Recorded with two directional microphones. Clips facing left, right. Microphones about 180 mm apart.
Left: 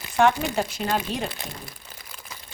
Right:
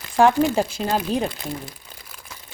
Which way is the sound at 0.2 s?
35° right (ahead or behind).